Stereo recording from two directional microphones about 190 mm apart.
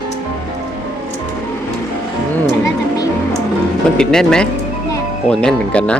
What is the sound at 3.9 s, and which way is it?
Speech, 5° left (ahead or behind).